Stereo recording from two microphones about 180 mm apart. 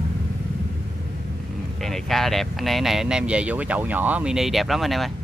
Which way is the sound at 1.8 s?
Centre (ahead or behind).